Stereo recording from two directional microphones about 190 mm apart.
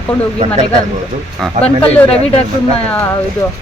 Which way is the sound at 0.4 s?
35° right (ahead or behind).